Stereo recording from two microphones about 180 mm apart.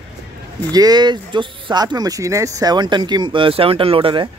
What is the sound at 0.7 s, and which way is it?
Speech, 20° right (ahead or behind).